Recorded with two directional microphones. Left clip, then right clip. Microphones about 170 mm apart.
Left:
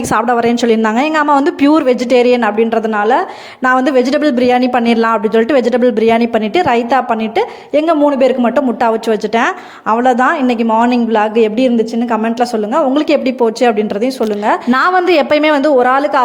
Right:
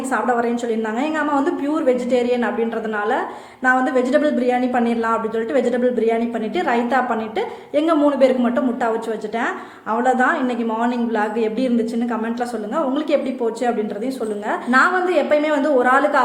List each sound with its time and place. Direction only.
0.1 s a woman's voice: 60° left (ahead or behind)